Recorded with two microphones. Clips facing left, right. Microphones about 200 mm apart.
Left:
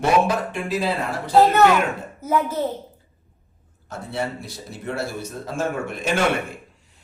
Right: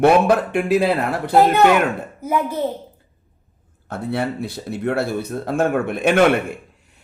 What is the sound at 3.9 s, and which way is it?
A man's voice, 60° right (ahead or behind).